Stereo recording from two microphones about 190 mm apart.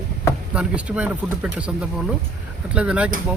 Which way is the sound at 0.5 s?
5° right (ahead or behind).